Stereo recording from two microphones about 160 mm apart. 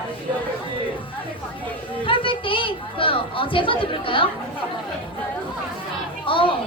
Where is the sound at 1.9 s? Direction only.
35° left (ahead or behind).